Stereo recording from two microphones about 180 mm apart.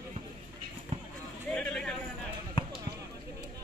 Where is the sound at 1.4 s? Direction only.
5° left (ahead or behind).